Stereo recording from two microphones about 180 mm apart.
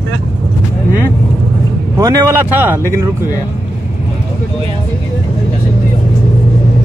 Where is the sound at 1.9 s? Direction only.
20° right (ahead or behind).